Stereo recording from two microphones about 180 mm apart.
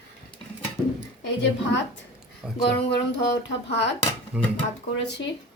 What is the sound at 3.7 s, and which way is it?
Speech, 75° left (ahead or behind).